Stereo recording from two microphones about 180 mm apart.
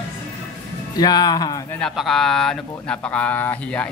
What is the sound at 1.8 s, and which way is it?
Speech, centre (ahead or behind).